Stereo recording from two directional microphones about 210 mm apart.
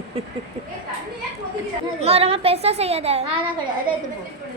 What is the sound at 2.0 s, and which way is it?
A woman's voice, 30° right (ahead or behind).